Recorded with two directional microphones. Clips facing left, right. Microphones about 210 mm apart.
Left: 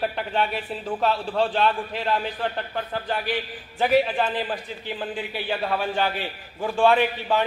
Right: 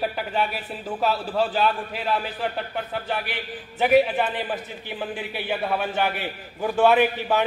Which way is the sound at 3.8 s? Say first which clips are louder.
Right 2 dB; 15° right (ahead or behind).